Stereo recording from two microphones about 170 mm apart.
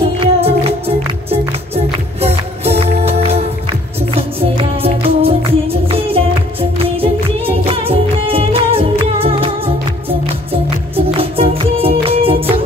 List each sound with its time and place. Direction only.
0.2 s music: 35° right (ahead or behind)
2.1 s music: 35° right (ahead or behind)